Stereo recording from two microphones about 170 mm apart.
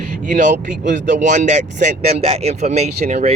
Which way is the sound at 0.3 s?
50° right (ahead or behind).